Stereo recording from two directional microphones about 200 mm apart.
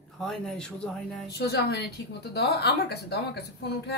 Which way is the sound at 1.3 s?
55° left (ahead or behind).